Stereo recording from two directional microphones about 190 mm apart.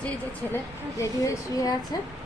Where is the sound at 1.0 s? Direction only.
15° left (ahead or behind).